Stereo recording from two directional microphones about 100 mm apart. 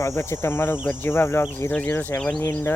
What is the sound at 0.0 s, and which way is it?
Speech, 30° left (ahead or behind).